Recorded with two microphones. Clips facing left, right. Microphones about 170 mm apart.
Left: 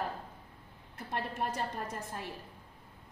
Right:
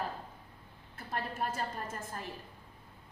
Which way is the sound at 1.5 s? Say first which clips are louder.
Left 1 dB; 5° right (ahead or behind).